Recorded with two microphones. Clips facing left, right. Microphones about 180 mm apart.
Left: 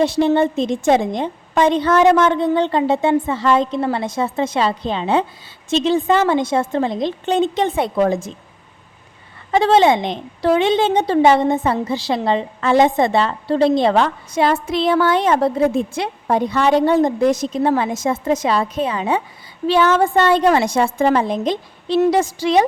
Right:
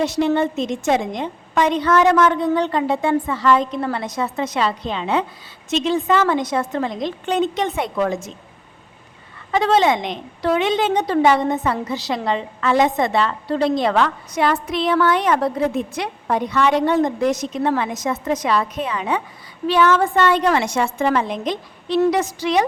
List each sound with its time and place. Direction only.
0.0 s a woman's voice: 30° left (ahead or behind)
9.5 s a woman's voice: 30° left (ahead or behind)